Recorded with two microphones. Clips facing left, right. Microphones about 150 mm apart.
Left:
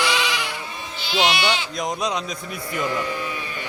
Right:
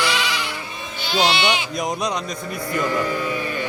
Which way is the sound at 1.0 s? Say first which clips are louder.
Right 1 dB; 45° right (ahead or behind).